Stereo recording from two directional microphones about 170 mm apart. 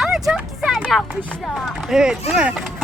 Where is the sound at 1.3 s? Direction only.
Centre (ahead or behind).